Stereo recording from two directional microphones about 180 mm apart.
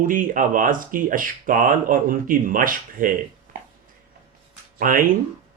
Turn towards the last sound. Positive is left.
turn(degrees=-50)  # may be behind; listen again after turning